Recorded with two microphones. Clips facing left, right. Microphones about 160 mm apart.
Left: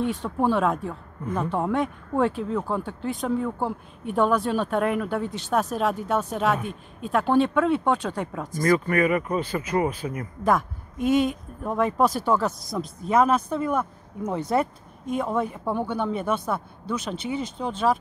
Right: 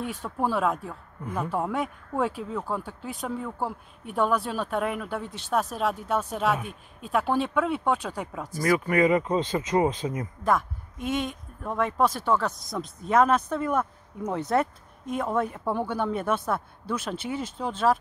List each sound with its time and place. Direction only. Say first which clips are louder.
0.0 s speech: left 5 dB; 5° right (ahead or behind); by 10.2 s 20° right (ahead or behind)
10.4 s speech: left 3 dB; centre (ahead or behind)